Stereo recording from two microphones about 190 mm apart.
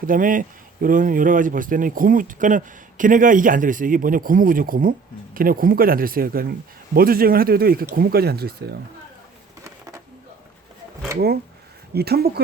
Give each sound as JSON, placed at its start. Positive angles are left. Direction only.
{"t": 0.0, "sound": "speech", "side_deg": -45}
{"t": 9.6, "sound": "a sound", "side_deg": -15}
{"t": 11.9, "sound": "speech", "side_deg": -55}